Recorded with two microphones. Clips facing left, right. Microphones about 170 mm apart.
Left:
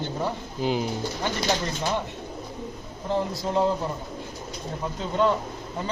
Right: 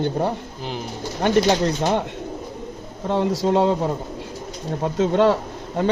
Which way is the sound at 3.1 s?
80° right.